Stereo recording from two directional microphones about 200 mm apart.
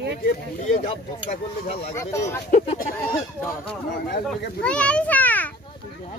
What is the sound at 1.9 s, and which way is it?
Speech, 15° left (ahead or behind).